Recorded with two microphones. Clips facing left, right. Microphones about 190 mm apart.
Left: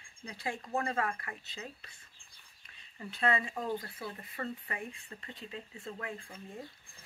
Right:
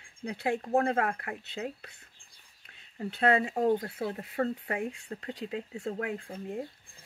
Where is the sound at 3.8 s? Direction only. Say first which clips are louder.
Right 9 dB; 65° right (ahead or behind).